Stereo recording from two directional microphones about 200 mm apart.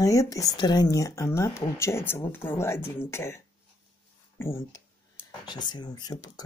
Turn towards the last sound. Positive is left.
turn(degrees=20)  # may be behind; listen again after turning